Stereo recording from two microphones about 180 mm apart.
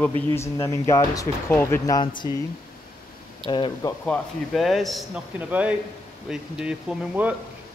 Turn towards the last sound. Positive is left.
turn(degrees=-5)  # may be behind; listen again after turning